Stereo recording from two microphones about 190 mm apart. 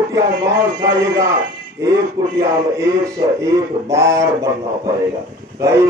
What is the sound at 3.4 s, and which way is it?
A man's voice, 15° right (ahead or behind).